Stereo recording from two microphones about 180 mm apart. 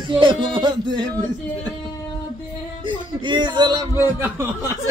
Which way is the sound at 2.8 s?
25° right (ahead or behind).